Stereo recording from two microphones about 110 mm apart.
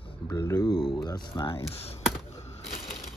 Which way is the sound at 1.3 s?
50° left (ahead or behind).